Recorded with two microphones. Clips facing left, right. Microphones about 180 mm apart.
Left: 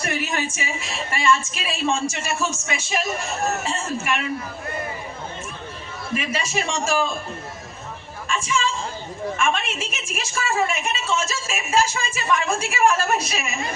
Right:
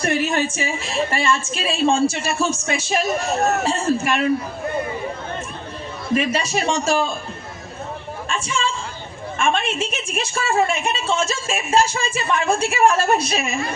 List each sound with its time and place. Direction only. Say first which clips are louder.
0.0 s a woman's voice: right 6 dB; 30° right (ahead or behind)
6.1 s a woman's voice: right 5 dB; 35° right (ahead or behind)
8.3 s a woman's voice: even; 30° right (ahead or behind)